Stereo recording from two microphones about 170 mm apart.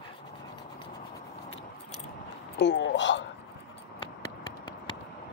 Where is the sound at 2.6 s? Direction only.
90° left.